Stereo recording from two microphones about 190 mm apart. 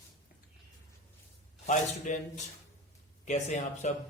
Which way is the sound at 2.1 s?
40° left (ahead or behind).